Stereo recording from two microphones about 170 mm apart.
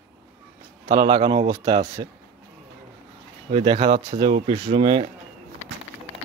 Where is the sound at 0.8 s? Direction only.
30° right (ahead or behind).